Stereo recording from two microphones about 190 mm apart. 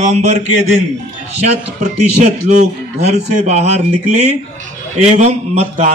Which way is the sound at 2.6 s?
35° right (ahead or behind).